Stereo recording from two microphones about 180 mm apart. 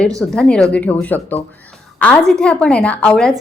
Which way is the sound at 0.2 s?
5° left (ahead or behind).